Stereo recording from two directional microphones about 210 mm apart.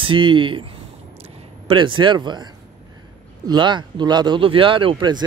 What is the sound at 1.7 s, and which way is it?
Speech, 25° right (ahead or behind).